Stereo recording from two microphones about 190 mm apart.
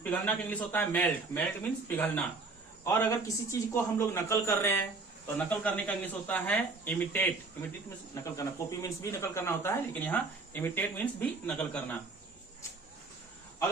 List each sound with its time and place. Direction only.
0.0 s a man's voice: 10° left (ahead or behind)